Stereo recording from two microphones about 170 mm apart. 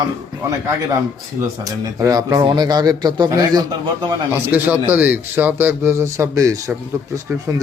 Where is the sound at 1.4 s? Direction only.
20° right (ahead or behind).